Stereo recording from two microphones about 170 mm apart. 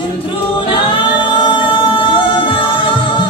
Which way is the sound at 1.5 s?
30° left (ahead or behind).